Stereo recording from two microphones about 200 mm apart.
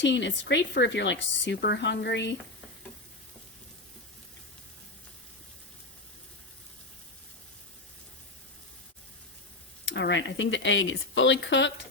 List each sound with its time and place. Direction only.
0.0 s speech: 60° left (ahead or behind)
9.8 s speech: 60° left (ahead or behind)